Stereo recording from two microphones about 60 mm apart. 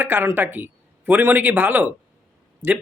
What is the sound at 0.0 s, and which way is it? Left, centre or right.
A man's voice, right.